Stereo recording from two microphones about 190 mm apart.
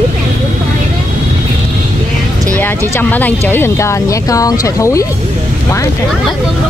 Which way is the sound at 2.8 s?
10° left (ahead or behind).